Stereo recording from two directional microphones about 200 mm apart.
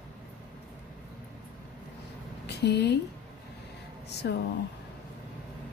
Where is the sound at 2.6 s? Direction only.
55° left (ahead or behind).